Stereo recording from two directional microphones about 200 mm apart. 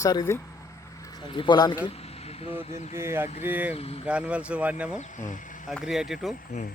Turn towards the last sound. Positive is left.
turn(degrees=0)  # may be behind; listen again after turning